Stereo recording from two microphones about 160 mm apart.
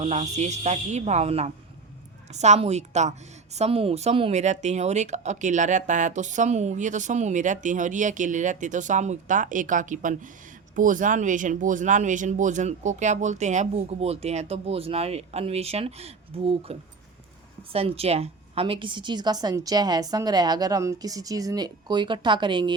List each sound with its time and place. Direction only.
0.0 s a woman's voice: 45° right (ahead or behind)